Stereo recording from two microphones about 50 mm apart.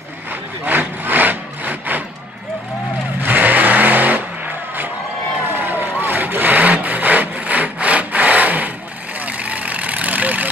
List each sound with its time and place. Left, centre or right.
0.3 s wood: right
3.2 s vehicle: right